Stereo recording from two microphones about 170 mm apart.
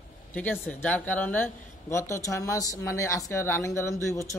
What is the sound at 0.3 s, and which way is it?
Speech, 10° left (ahead or behind).